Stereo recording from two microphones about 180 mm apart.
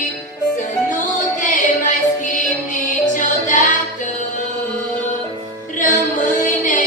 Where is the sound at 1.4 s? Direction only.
45° left (ahead or behind).